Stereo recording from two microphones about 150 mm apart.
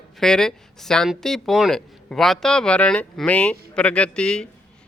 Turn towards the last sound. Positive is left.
turn(degrees=5)  # may be behind; listen again after turning